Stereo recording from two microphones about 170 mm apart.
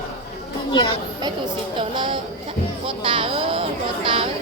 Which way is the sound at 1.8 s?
30° right (ahead or behind).